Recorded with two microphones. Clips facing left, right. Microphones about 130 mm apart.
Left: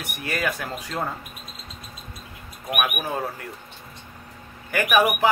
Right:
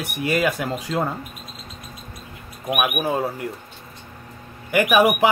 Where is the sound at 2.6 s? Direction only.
20° right (ahead or behind).